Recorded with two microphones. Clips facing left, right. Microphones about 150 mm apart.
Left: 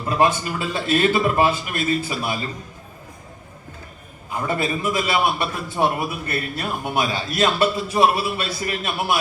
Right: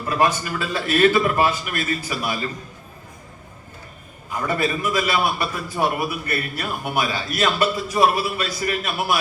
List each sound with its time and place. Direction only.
0.1 s a man's voice: 20° left (ahead or behind)
4.4 s a man's voice: 20° left (ahead or behind)